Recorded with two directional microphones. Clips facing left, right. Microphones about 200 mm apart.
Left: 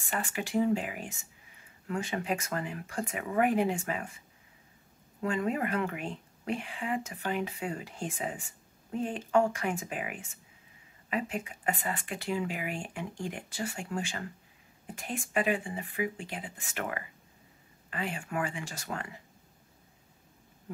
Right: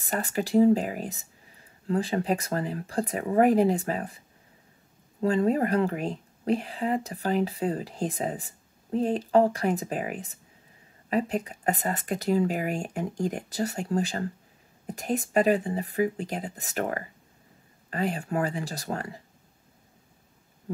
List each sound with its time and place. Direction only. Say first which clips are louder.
0.0 s speech: right 6 dB; 35° right (ahead or behind)
5.2 s speech: right 7 dB; 35° right (ahead or behind)